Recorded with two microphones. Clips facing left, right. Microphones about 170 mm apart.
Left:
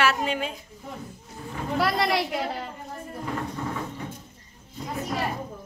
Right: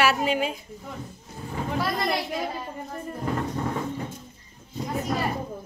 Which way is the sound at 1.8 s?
75° left (ahead or behind).